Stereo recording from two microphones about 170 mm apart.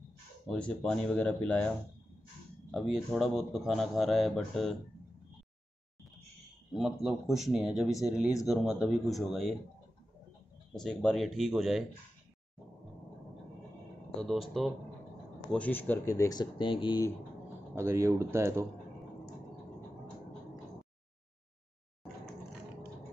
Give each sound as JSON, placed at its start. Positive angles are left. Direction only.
{"t": 0.5, "sound": "speech", "side_deg": 5}
{"t": 2.7, "sound": "speech", "side_deg": 0}
{"t": 6.7, "sound": "speech", "side_deg": 0}
{"t": 10.7, "sound": "speech", "side_deg": 5}
{"t": 14.2, "sound": "speech", "side_deg": 0}
{"t": 17.7, "sound": "speech", "side_deg": -15}